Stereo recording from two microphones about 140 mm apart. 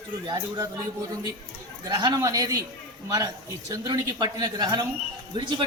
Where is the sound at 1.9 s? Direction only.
30° right (ahead or behind).